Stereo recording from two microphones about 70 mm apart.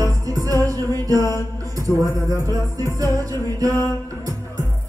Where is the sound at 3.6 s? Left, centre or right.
Right.